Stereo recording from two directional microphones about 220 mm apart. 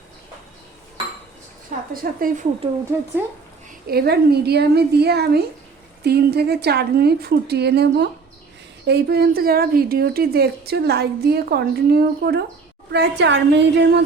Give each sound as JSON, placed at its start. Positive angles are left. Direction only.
{"t": 1.9, "sound": "a woman's voice", "side_deg": -40}
{"t": 3.8, "sound": "a woman's voice", "side_deg": -45}